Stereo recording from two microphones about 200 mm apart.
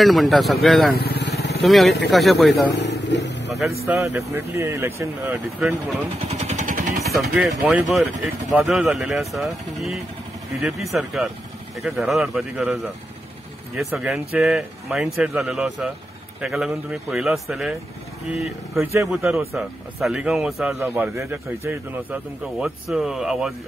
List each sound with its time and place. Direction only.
0.0 s speech: centre (ahead or behind)
0.9 s vehicle: 50° left (ahead or behind)
1.6 s speech: centre (ahead or behind)
3.1 s vehicle: 60° left (ahead or behind)
3.8 s speech: 10° right (ahead or behind)
5.6 s speech: centre (ahead or behind)
6.2 s vehicle: 35° right (ahead or behind)
7.3 s speech: 5° right (ahead or behind)
18.8 s speech: 15° right (ahead or behind)